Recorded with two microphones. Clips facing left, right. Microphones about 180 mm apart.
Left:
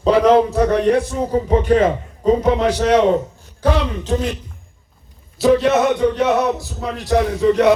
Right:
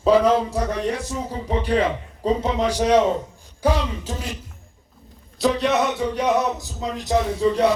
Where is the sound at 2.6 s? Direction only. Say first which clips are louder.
Left 4 dB; 10° right (ahead or behind).